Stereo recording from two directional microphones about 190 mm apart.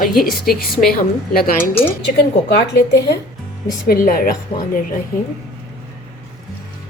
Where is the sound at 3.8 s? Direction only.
50° left (ahead or behind).